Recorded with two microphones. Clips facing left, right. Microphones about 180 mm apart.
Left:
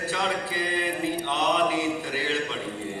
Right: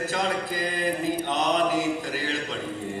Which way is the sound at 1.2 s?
45° right (ahead or behind).